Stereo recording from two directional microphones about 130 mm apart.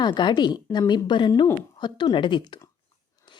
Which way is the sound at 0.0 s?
35° left (ahead or behind).